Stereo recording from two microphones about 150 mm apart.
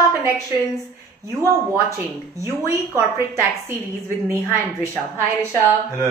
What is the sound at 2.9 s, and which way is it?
Speech, 15° right (ahead or behind).